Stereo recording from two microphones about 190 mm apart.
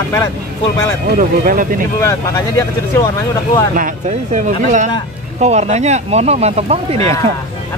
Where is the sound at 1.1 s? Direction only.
45° right (ahead or behind).